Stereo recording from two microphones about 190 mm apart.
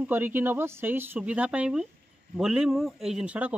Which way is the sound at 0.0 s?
10° right (ahead or behind).